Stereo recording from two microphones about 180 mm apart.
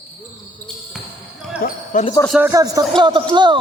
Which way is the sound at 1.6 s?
55° left (ahead or behind).